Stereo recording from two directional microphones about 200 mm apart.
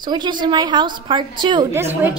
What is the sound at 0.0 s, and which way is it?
A woman's voice, 20° right (ahead or behind).